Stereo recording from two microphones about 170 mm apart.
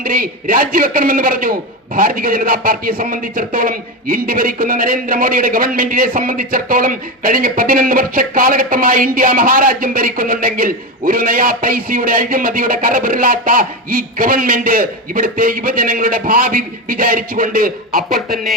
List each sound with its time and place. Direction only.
0.0 s a man's voice: 55° right (ahead or behind)
18.1 s fowl: centre (ahead or behind)